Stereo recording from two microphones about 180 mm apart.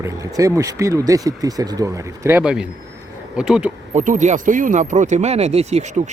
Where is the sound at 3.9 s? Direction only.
45° right (ahead or behind).